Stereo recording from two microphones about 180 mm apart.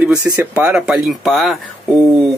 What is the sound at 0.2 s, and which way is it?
Speech, 10° right (ahead or behind).